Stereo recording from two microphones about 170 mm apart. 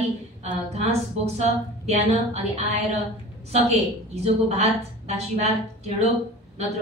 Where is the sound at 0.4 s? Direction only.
40° right (ahead or behind).